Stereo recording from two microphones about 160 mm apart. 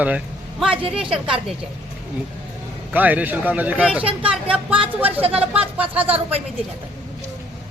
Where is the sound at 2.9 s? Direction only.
10° right (ahead or behind).